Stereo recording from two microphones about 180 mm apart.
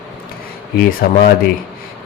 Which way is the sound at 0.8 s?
55° left (ahead or behind).